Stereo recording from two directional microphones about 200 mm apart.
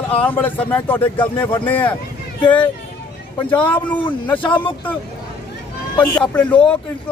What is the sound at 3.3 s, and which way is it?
Speech, 5° left (ahead or behind).